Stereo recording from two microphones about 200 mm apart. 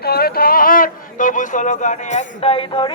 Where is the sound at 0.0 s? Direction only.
50° left (ahead or behind).